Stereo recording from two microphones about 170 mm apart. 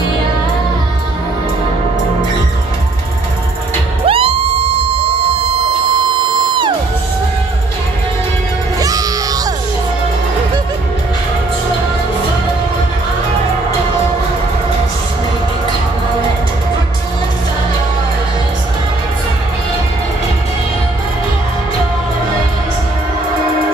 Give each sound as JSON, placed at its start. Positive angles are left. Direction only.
{"t": 4.0, "sound": "music", "side_deg": -35}
{"t": 8.7, "sound": "music", "side_deg": -20}